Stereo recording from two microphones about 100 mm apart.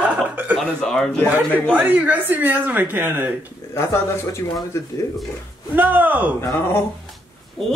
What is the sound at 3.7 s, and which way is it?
Speech, 25° left (ahead or behind).